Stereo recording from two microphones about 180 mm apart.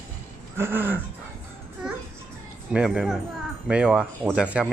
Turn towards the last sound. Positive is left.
turn(degrees=-10)  # may be behind; listen again after turning